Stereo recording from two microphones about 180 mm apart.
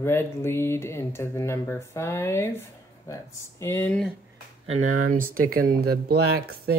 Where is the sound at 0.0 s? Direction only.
15° left (ahead or behind).